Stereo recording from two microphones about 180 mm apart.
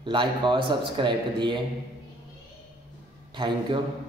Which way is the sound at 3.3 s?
25° right (ahead or behind).